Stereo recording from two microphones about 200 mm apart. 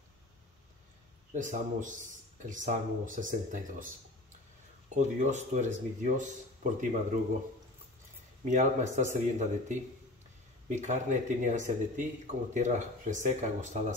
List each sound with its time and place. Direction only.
1.3 s speech: 40° right (ahead or behind)
4.9 s speech: 35° right (ahead or behind)
8.5 s speech: 40° right (ahead or behind)